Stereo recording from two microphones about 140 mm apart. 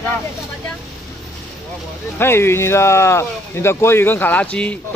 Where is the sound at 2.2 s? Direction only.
20° left (ahead or behind).